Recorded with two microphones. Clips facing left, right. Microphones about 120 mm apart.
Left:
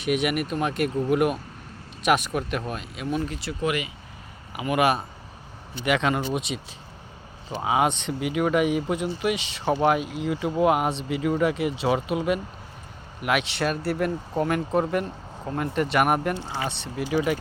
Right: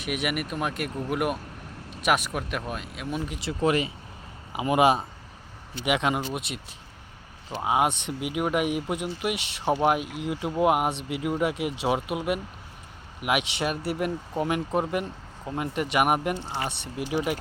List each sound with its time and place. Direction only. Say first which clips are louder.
0.0 s speech: left 5 dB; centre (ahead or behind)
3.6 s speech: right 3 dB; 35° right (ahead or behind); by 6.6 s 5° right (ahead or behind)
7.6 s speech: left 1 dB; 5° right (ahead or behind)